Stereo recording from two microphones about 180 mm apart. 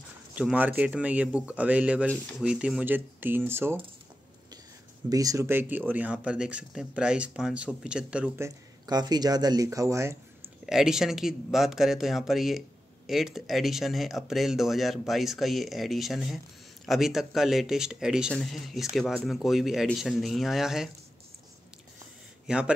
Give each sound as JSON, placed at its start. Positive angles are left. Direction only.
{"t": 0.4, "sound": "speech", "side_deg": -10}
{"t": 5.1, "sound": "speech", "side_deg": -20}
{"t": 8.5, "sound": "speech", "side_deg": -20}
{"t": 10.6, "sound": "speech", "side_deg": 0}
{"t": 22.5, "sound": "speech", "side_deg": -5}